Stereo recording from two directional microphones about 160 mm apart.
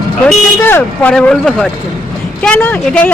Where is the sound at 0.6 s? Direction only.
15° left (ahead or behind).